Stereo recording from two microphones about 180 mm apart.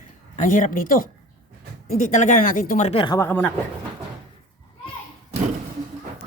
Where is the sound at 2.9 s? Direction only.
30° left (ahead or behind).